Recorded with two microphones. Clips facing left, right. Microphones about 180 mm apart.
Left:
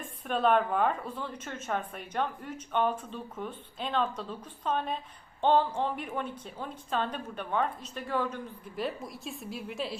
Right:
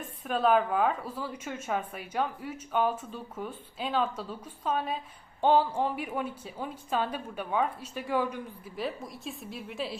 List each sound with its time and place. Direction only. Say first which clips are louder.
0.3 s a woman's voice: right 1 dB; centre (ahead or behind)
8.7 s speech: even; centre (ahead or behind)